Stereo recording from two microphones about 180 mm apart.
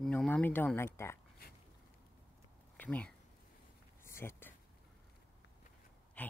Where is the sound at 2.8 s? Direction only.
10° left (ahead or behind).